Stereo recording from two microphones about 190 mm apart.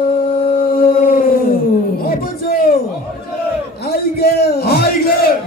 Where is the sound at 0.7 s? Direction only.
50° left (ahead or behind).